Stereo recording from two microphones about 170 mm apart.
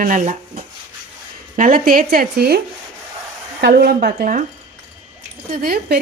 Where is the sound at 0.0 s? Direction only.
50° right (ahead or behind); by 2.6 s 65° right (ahead or behind).